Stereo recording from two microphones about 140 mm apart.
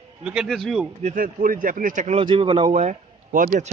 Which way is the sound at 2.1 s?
40° right (ahead or behind).